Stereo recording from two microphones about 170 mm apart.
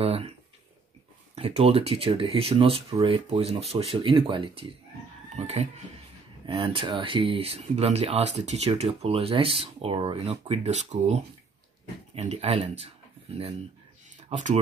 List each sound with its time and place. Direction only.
0.0 s speech: 35° right (ahead or behind)
1.3 s speech: 35° right (ahead or behind)
14.3 s speech: 40° right (ahead or behind)